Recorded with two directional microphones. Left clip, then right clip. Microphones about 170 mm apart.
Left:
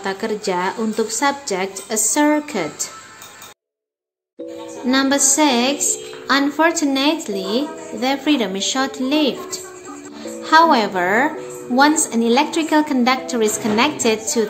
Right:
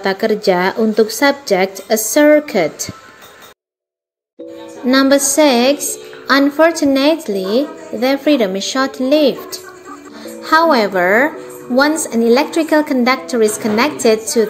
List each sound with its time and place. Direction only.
0.0 s a woman's voice: 25° right (ahead or behind)
4.8 s a woman's voice: 20° right (ahead or behind)